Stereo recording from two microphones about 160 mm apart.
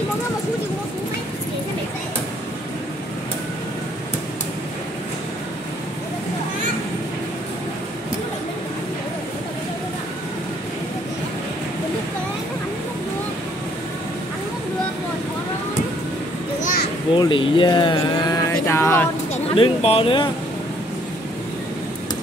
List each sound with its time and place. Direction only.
17.1 s speech: 30° left (ahead or behind)
18.7 s speech: 15° left (ahead or behind)
19.5 s speech: 35° left (ahead or behind)